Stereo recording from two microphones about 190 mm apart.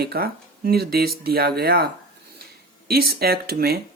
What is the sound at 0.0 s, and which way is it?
Speech, 55° right (ahead or behind).